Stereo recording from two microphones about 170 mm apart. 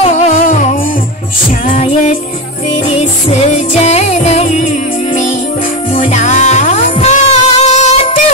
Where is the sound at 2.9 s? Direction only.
35° left (ahead or behind).